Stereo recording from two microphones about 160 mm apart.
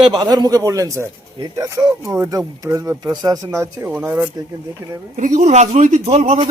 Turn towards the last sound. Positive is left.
turn(degrees=-40)  # may be behind; listen again after turning